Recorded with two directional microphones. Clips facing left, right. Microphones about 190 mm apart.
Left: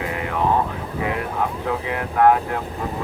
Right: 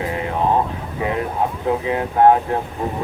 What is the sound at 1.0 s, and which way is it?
Speech, 30° right (ahead or behind).